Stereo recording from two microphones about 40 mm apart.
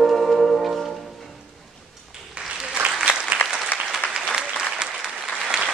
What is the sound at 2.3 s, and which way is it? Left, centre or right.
Applause, right.